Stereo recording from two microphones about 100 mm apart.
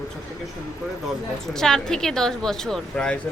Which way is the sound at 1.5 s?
5° left (ahead or behind).